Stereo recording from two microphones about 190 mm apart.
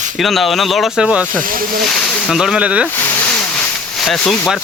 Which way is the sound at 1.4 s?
50° right (ahead or behind).